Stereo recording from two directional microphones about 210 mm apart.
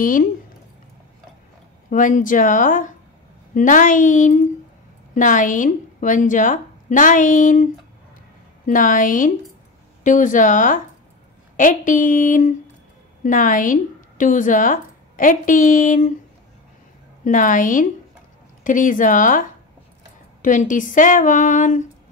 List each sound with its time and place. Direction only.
0.0 s a woman's voice: 40° left (ahead or behind)
1.9 s a woman's voice: 40° left (ahead or behind)
8.6 s a woman's voice: 40° left (ahead or behind)
17.2 s a woman's voice: 40° left (ahead or behind)
20.4 s a woman's voice: 40° left (ahead or behind)